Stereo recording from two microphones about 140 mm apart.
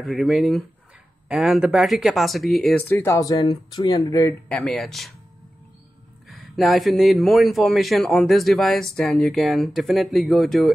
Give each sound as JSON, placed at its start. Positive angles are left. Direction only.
{"t": 0.0, "sound": "speech", "side_deg": 0}
{"t": 2.9, "sound": "speech", "side_deg": 20}
{"t": 4.5, "sound": "speech", "side_deg": 5}
{"t": 6.2, "sound": "speech", "side_deg": 0}